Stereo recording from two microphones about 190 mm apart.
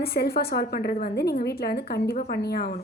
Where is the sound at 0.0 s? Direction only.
55° left (ahead or behind).